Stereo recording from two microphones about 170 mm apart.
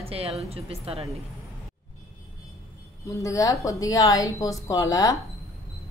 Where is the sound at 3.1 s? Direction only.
20° left (ahead or behind).